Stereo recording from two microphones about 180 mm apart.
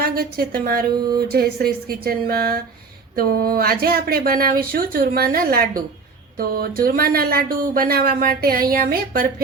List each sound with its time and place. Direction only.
0.0 s a woman's voice: 55° right (ahead or behind)